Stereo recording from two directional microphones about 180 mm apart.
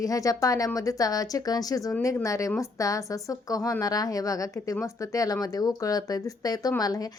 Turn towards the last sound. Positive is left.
turn(degrees=20)  # may be behind; listen again after turning